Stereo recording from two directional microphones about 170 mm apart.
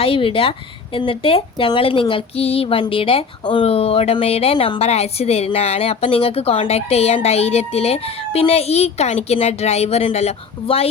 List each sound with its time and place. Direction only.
0.0 s speech: 35° left (ahead or behind)